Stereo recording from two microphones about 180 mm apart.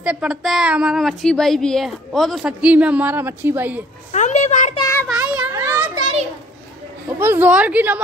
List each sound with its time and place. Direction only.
0.0 s a woman's voice: 5° right (ahead or behind)
4.1 s a sound: 40° left (ahead or behind)
4.7 s child singing: 15° left (ahead or behind)
5.0 s a sound: 5° right (ahead or behind)
5.5 s children playing: 15° right (ahead or behind)
7.2 s a woman's voice: 10° right (ahead or behind)